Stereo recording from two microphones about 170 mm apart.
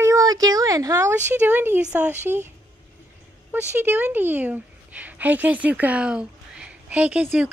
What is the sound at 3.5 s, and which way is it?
A woman's voice, 10° right (ahead or behind).